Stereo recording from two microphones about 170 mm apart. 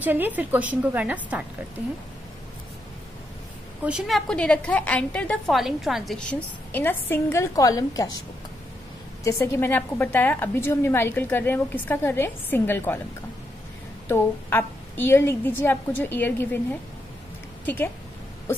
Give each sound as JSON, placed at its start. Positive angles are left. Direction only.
{"t": 0.0, "sound": "a woman's voice", "side_deg": -10}
{"t": 3.8, "sound": "a woman's voice", "side_deg": -5}
{"t": 6.7, "sound": "a woman's voice", "side_deg": 10}
{"t": 9.2, "sound": "a woman's voice", "side_deg": 15}
{"t": 14.0, "sound": "a woman's voice", "side_deg": 10}
{"t": 17.6, "sound": "a woman's voice", "side_deg": 10}